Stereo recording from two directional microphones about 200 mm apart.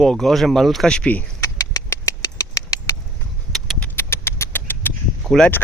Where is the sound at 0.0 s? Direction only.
Centre (ahead or behind).